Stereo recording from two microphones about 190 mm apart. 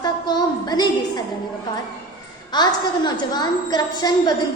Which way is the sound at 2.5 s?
25° left (ahead or behind).